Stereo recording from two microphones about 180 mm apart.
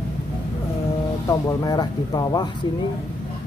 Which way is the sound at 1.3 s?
20° left (ahead or behind).